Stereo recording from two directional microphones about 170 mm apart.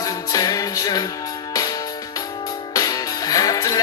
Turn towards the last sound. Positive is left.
turn(degrees=20)  # may be behind; listen again after turning